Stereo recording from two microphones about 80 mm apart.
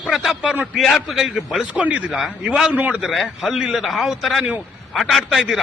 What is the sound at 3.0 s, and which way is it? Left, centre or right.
A man's voice, centre.